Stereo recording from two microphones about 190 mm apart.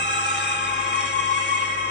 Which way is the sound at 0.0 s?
65° left (ahead or behind).